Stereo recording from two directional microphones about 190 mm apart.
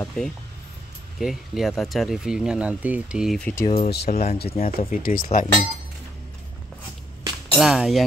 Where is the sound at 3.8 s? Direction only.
55° left (ahead or behind).